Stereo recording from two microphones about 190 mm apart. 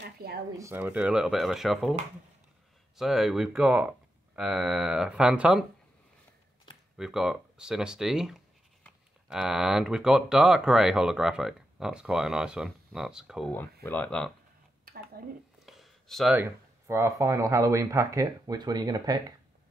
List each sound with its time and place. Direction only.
0.2 s speech: 55° right (ahead or behind)
0.6 s speech: 10° right (ahead or behind)
3.0 s speech: centre (ahead or behind)
7.0 s speech: centre (ahead or behind)
15.2 s speech: 50° right (ahead or behind)
15.6 s a sound: centre (ahead or behind)
16.3 s speech: 15° right (ahead or behind)